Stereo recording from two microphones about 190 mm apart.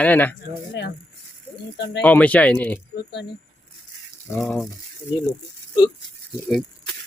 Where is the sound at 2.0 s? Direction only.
5° left (ahead or behind).